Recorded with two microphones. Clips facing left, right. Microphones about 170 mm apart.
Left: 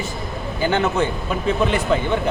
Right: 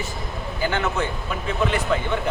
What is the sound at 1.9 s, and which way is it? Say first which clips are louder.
Speech: left 4 dB; 25° left (ahead or behind).